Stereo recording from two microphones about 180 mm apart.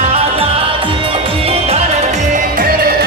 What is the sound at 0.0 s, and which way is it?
Music, 35° right (ahead or behind).